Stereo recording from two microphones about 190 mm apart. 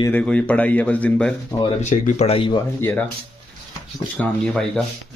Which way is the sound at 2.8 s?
10° left (ahead or behind).